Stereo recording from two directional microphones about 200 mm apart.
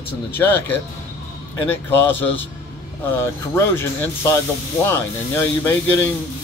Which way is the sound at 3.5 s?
15° left (ahead or behind).